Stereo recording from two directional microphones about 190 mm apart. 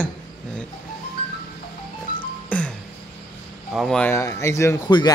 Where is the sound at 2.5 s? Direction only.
5° left (ahead or behind).